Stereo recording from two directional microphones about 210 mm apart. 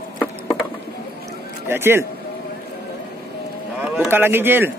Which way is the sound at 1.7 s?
10° right (ahead or behind).